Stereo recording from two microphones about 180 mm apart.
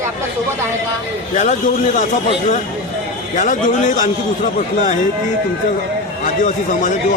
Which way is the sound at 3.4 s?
45° left (ahead or behind).